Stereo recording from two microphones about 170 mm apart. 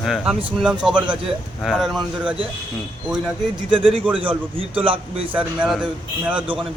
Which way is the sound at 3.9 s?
5° right (ahead or behind).